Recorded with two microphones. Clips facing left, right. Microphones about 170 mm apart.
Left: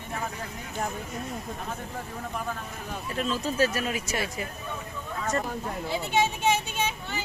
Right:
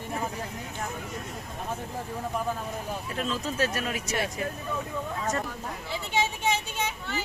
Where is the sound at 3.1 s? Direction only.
Centre (ahead or behind).